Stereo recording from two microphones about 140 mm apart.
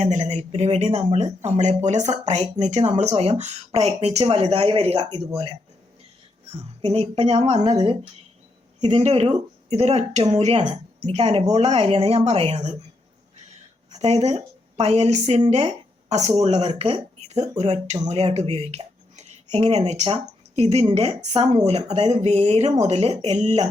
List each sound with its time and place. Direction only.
0.0 s speech: 55° right (ahead or behind)
6.8 s speech: 40° right (ahead or behind)
9.0 s speech: 50° right (ahead or behind)
13.9 s a woman's voice: 50° right (ahead or behind)
20.8 s speech: 40° right (ahead or behind)
21.2 s speech: 50° right (ahead or behind)